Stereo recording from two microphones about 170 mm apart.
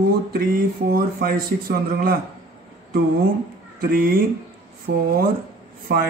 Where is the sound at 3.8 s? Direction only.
60° right (ahead or behind).